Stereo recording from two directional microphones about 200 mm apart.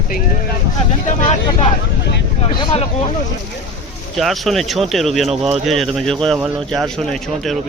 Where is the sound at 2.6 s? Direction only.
30° left (ahead or behind).